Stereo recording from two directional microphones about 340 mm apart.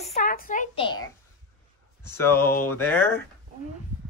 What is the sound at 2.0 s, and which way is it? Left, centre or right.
Speech, centre.